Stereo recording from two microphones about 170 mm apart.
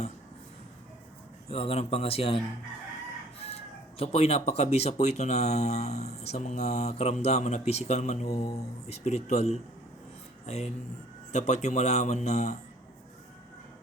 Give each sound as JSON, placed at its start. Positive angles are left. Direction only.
{"t": 1.5, "sound": "speech", "side_deg": 35}
{"t": 3.9, "sound": "speech", "side_deg": 35}